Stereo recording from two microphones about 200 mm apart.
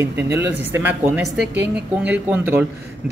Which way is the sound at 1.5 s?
60° right (ahead or behind).